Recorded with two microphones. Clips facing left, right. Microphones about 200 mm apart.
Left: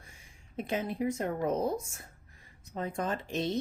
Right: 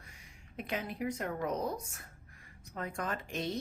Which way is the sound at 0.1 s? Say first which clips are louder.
Left 1 dB; 25° left (ahead or behind).